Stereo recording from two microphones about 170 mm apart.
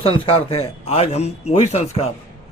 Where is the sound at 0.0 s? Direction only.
35° left (ahead or behind).